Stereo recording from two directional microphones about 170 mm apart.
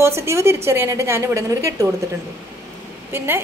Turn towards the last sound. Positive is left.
turn(degrees=-15)  # may be behind; listen again after turning